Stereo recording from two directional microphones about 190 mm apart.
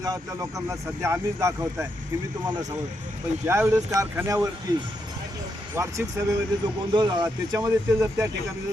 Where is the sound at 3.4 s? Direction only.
15° right (ahead or behind).